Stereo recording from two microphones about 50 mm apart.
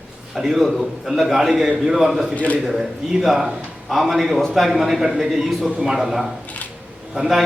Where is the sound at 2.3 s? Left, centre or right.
Left.